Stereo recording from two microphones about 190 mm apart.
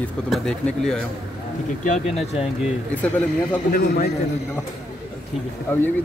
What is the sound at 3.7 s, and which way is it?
Speech, 55° left (ahead or behind).